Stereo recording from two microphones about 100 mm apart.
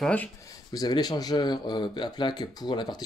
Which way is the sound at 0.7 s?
40° left (ahead or behind).